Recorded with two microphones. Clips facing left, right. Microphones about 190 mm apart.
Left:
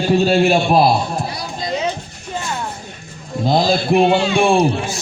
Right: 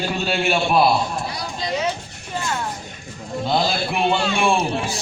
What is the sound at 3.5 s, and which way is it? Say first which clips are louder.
A man's voice: left 7 dB; 35° left (ahead or behind).